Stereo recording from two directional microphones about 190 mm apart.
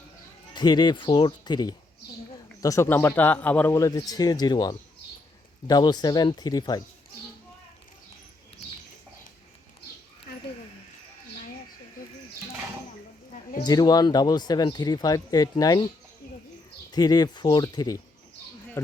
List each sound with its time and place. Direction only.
0.5 s speech: 20° left (ahead or behind)
13.3 s a sound: 45° left (ahead or behind)
13.7 s speech: 20° left (ahead or behind)
16.9 s speech: 20° left (ahead or behind)